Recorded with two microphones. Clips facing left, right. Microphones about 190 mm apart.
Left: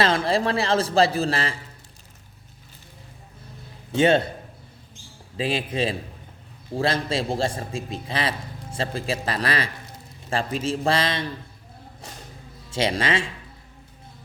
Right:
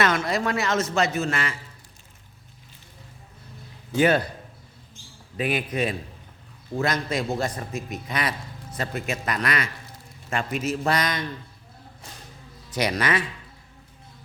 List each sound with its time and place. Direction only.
0.0 s a man's voice: 30° left (ahead or behind)
3.9 s a man's voice: 25° left (ahead or behind)
5.4 s a man's voice: 30° left (ahead or behind)
12.7 s a man's voice: 25° left (ahead or behind)